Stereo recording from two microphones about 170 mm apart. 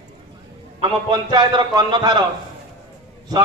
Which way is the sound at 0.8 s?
25° right (ahead or behind).